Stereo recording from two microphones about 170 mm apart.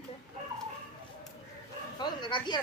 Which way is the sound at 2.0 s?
25° left (ahead or behind).